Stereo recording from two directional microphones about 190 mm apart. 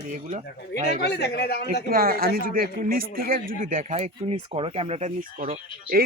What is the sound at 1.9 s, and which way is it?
Speech, 50° right (ahead or behind).